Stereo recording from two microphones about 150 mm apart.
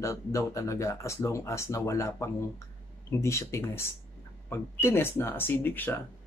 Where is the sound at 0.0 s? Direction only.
20° left (ahead or behind).